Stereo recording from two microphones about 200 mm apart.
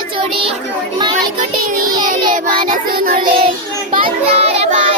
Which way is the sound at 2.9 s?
45° right (ahead or behind).